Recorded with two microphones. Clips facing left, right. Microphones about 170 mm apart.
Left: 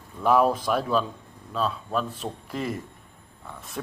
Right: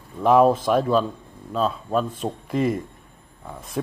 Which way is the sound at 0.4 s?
45° right (ahead or behind).